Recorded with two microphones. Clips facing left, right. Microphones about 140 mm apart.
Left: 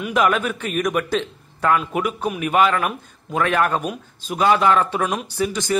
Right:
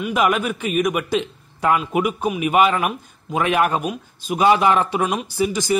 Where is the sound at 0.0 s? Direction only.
5° right (ahead or behind).